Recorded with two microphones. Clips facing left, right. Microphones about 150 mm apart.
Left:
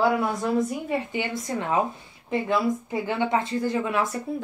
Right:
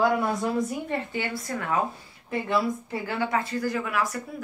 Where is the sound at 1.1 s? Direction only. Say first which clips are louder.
Left 2 dB; 20° left (ahead or behind).